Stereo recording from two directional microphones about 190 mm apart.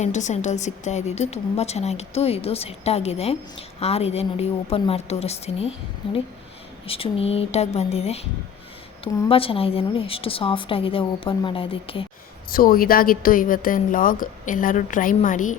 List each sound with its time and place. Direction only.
0.0 s a woman's voice: 40° left (ahead or behind)
9.3 s a woman's voice: 30° left (ahead or behind)
12.5 s a woman's voice: 50° left (ahead or behind)